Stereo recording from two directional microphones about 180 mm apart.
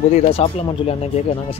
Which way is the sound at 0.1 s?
35° left (ahead or behind).